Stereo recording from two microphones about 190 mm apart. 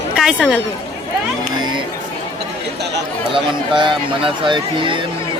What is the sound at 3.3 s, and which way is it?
Speech, 25° right (ahead or behind).